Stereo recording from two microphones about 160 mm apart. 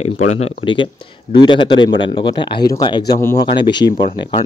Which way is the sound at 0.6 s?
30° left (ahead or behind).